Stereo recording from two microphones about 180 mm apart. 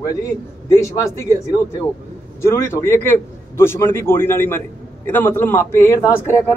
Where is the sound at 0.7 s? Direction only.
15° left (ahead or behind).